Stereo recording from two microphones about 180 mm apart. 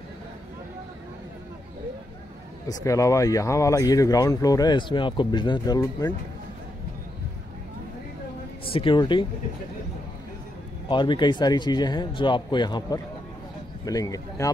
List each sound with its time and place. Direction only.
2.7 s speech: 15° left (ahead or behind)
8.6 s speech: 30° left (ahead or behind)
10.9 s speech: 25° left (ahead or behind)